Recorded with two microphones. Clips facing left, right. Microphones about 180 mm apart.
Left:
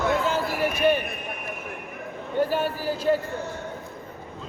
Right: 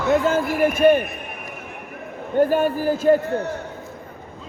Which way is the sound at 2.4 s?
50° right (ahead or behind).